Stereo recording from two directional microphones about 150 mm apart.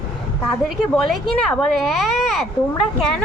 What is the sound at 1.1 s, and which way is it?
A child's voice, 5° left (ahead or behind).